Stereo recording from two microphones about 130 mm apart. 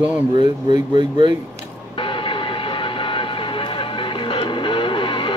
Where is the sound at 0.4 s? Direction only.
35° right (ahead or behind).